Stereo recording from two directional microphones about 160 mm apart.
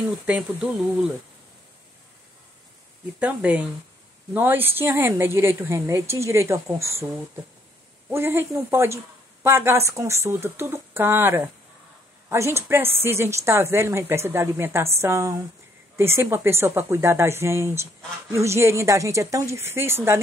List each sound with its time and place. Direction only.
0.3 s speech: 5° right (ahead or behind)
3.2 s speech: 10° right (ahead or behind)
8.1 s speech: 15° right (ahead or behind)